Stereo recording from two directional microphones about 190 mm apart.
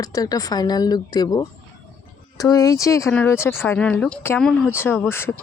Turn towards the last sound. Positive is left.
turn(degrees=10)  # may be behind; listen again after turning